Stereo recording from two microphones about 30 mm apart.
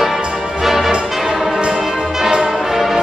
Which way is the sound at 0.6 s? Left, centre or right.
Centre.